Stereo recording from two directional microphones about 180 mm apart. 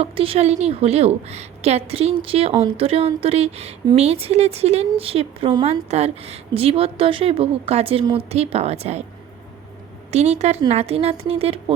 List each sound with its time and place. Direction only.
0.0 s speech: 30° right (ahead or behind)
10.1 s speech: 40° right (ahead or behind)